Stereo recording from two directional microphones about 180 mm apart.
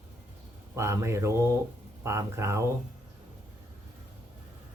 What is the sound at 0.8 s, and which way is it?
Speech, 15° right (ahead or behind).